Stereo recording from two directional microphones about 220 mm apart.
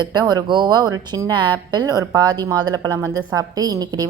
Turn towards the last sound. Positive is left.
turn(degrees=-15)  # may be behind; listen again after turning